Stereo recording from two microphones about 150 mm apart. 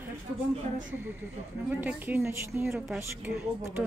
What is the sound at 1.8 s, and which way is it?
A woman's voice, 10° right (ahead or behind).